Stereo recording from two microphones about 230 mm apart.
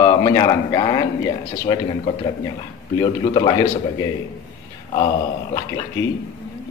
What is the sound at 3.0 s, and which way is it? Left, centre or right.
Speech, left.